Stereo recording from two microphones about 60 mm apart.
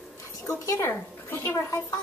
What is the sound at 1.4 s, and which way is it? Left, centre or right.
Speech, left.